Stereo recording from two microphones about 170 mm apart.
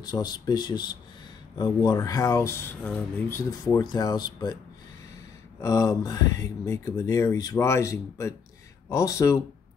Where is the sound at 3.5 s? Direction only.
20° left (ahead or behind).